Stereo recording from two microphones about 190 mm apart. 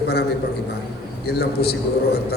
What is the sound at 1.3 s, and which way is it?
Speech, 60° left (ahead or behind).